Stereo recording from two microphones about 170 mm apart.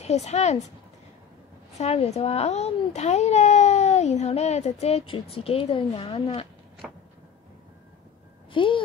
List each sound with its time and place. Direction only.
0.0 s a child's voice: 40° left (ahead or behind)
1.8 s a child's voice: 40° left (ahead or behind)
8.5 s speech: 30° left (ahead or behind)